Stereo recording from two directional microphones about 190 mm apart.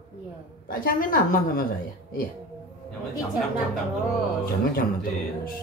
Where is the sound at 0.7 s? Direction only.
50° left (ahead or behind).